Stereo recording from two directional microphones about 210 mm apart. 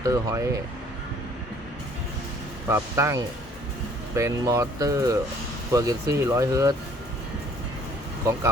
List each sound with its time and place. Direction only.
0.0 s speech: 15° right (ahead or behind)
2.6 s speech: 15° right (ahead or behind)